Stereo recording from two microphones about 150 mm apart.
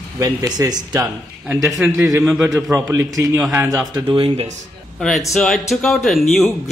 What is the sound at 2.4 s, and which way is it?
Speech, 20° right (ahead or behind).